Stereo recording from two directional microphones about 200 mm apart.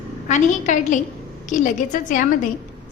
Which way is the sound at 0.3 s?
35° left (ahead or behind).